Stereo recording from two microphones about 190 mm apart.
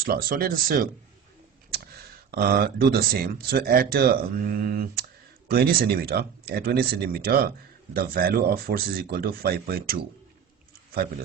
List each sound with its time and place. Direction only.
0.0 s speech: 50° right (ahead or behind)